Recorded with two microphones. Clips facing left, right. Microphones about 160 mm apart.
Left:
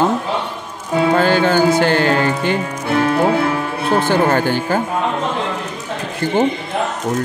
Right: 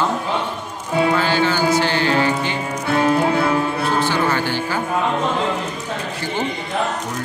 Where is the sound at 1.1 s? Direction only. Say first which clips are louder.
Left 5 dB; 50° left (ahead or behind).